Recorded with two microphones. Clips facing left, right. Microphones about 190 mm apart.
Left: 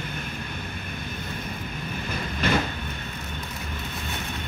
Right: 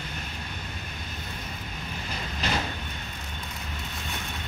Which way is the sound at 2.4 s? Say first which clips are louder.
Left 6 dB; 55° left (ahead or behind).